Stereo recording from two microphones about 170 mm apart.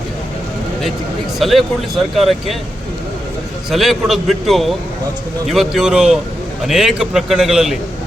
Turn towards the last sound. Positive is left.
turn(degrees=-5)  # may be behind; listen again after turning